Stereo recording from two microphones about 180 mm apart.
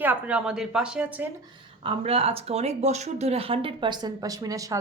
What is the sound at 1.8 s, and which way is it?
A woman's voice, 30° right (ahead or behind).